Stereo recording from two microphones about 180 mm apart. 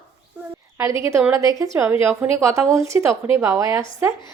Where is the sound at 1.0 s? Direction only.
15° right (ahead or behind).